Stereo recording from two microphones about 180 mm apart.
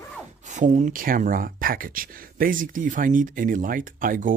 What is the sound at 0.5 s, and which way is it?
Speech, 40° right (ahead or behind).